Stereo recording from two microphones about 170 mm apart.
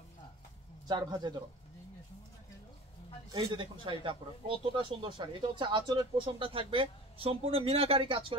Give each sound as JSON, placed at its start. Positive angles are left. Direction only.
{"t": 0.8, "sound": "speech", "side_deg": -25}
{"t": 3.3, "sound": "speech", "side_deg": -25}